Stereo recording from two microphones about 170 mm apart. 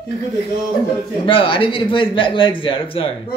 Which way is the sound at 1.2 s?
30° left (ahead or behind).